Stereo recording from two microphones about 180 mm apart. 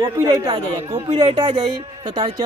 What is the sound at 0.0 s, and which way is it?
Speech, 15° right (ahead or behind).